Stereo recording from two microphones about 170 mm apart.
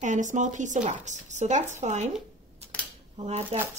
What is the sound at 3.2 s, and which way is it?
Speech, 35° right (ahead or behind).